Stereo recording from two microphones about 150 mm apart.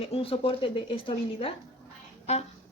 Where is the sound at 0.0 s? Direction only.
40° left (ahead or behind).